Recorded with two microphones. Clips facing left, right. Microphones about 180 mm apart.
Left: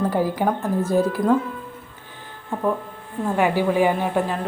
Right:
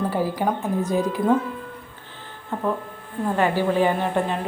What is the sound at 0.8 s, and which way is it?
Speech, 15° right (ahead or behind).